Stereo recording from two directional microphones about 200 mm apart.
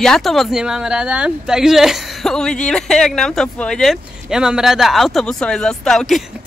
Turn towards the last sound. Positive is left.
turn(degrees=0)  # may be behind; listen again after turning